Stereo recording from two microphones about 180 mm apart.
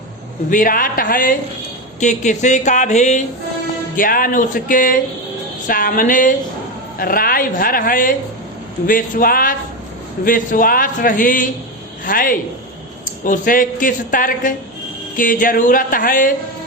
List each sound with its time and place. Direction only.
0.5 s a woman's voice: 50° left (ahead or behind)